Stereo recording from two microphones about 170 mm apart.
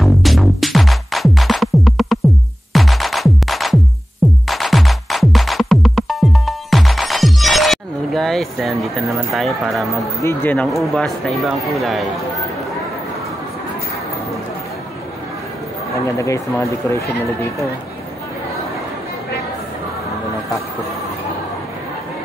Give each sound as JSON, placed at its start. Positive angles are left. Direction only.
{"t": 0.0, "sound": "music", "side_deg": 0}
{"t": 10.2, "sound": "speech", "side_deg": 10}
{"t": 16.2, "sound": "speech", "side_deg": 20}